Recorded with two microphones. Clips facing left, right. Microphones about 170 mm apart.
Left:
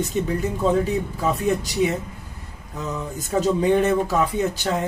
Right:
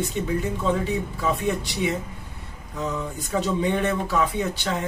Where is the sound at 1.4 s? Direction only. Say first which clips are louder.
Left 4 dB; 40° left (ahead or behind).